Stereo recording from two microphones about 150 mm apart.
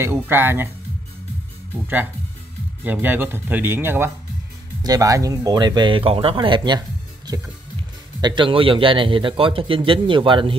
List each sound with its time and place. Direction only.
0.0 s speech: 15° right (ahead or behind)
2.8 s speech: 10° right (ahead or behind); by 6.8 s 30° right (ahead or behind)
8.2 s a man's voice: 30° right (ahead or behind)